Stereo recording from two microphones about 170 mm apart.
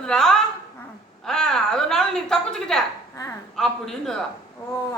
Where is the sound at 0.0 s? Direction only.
5° left (ahead or behind).